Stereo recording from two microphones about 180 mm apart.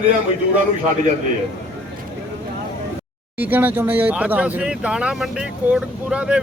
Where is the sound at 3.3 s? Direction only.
10° right (ahead or behind).